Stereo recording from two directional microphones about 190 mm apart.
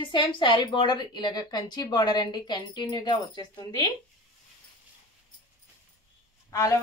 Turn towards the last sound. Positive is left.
turn(degrees=15)  # may be behind; listen again after turning